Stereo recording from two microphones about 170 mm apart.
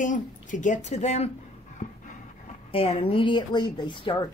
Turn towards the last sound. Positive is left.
turn(degrees=30)  # may be behind; listen again after turning